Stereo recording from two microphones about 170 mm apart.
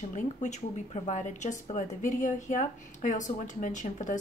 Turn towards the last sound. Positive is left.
turn(degrees=45)  # may be behind; listen again after turning